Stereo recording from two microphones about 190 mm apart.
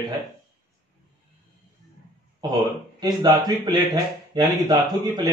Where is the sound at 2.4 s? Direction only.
20° right (ahead or behind).